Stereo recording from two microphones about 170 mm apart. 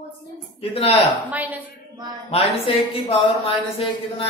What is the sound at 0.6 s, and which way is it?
Speech, 35° left (ahead or behind).